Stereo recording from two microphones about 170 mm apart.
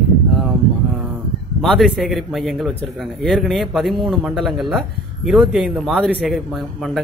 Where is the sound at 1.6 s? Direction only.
Centre (ahead or behind).